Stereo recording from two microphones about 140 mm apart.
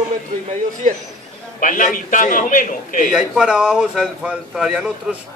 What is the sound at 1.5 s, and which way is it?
A man's voice, 70° left (ahead or behind).